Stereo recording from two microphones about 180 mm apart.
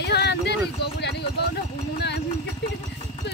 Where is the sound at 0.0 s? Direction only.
65° left (ahead or behind).